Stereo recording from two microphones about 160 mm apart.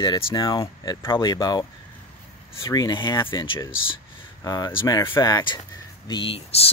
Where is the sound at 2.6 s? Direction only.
25° left (ahead or behind).